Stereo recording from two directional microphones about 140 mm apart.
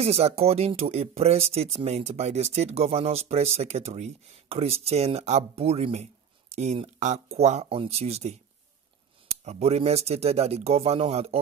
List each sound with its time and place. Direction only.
0.0 s speech: 45° right (ahead or behind)
9.4 s speech: 50° right (ahead or behind)